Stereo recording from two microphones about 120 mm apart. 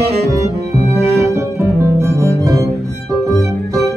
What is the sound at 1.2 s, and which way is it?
Music, 25° right (ahead or behind).